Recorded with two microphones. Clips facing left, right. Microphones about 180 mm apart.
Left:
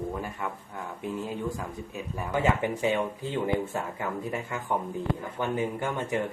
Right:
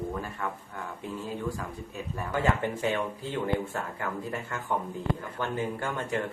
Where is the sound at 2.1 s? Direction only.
10° left (ahead or behind).